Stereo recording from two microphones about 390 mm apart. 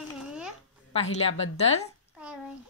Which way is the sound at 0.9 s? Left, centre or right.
Centre.